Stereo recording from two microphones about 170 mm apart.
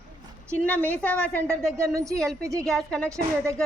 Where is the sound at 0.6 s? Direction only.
10° left (ahead or behind).